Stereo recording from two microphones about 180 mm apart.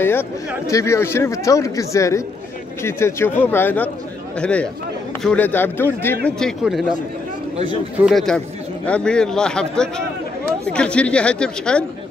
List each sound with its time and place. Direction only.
0.0 s speech: 10° left (ahead or behind)
6.2 s a man's voice: centre (ahead or behind)
8.0 s a man's voice: centre (ahead or behind)